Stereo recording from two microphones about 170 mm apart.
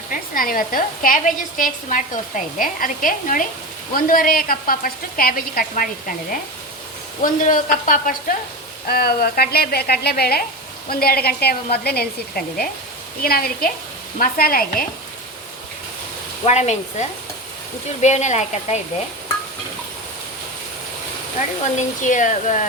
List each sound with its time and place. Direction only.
0.1 s a woman's voice: 55° left (ahead or behind)
8.9 s a woman's voice: 65° left (ahead or behind)
13.2 s a woman's voice: 60° left (ahead or behind)
16.5 s a woman's voice: 40° left (ahead or behind)
21.8 s a woman's voice: 45° left (ahead or behind)